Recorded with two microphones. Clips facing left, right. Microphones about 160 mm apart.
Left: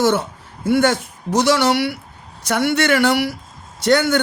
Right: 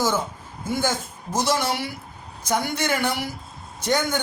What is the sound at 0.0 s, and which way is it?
A man's voice, 70° left (ahead or behind).